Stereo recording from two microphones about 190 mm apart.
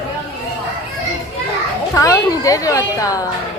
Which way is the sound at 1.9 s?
15° left (ahead or behind).